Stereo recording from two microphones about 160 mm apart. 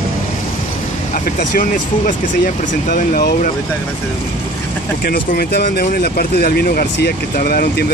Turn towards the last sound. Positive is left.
turn(degrees=75)  # may be behind; listen again after turning